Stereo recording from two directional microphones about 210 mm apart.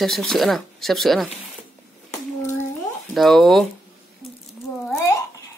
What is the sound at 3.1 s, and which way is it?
Speech, centre (ahead or behind).